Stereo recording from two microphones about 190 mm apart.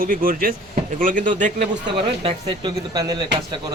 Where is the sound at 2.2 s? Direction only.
25° right (ahead or behind).